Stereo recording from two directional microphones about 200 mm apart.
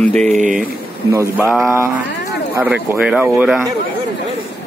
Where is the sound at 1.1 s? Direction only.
15° right (ahead or behind).